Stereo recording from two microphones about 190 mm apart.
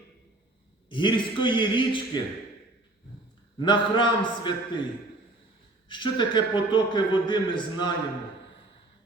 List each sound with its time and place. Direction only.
0.9 s a man's voice: 25° left (ahead or behind)
3.6 s a man's voice: 25° left (ahead or behind)
5.9 s a man's voice: 25° left (ahead or behind)